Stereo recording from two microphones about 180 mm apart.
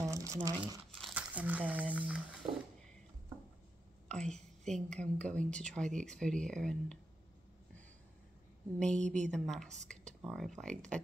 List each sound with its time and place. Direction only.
0.0 s crumpling: 20° right (ahead or behind)
0.9 s speech: 5° right (ahead or behind)
4.1 s a woman's voice: 5° left (ahead or behind)
8.7 s speech: 5° left (ahead or behind)